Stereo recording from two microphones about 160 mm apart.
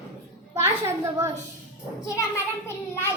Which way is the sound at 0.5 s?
15° right (ahead or behind).